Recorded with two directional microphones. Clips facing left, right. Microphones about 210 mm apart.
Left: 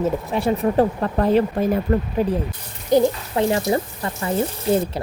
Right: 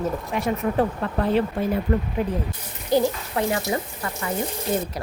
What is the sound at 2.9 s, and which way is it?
A woman's voice, 20° left (ahead or behind).